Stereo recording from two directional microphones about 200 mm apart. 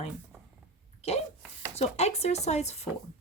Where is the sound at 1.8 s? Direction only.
30° left (ahead or behind).